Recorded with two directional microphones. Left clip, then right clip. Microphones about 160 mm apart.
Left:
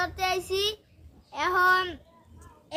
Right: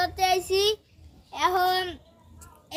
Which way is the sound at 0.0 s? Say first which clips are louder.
Right 4 dB; 20° left (ahead or behind).